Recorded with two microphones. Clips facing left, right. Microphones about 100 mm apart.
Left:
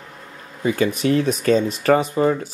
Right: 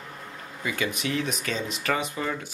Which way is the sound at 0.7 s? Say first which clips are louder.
Left 10 dB; 40° left (ahead or behind).